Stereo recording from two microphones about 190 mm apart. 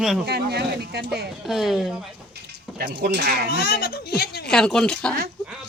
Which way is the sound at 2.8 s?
50° right (ahead or behind).